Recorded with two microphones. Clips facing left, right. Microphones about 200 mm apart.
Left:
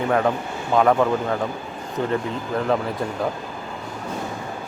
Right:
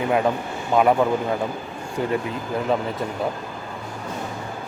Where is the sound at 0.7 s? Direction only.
10° right (ahead or behind).